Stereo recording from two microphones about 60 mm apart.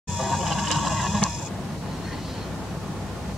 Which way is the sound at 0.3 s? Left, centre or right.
Centre.